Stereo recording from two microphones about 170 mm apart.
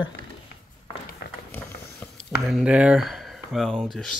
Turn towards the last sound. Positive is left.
turn(degrees=5)  # may be behind; listen again after turning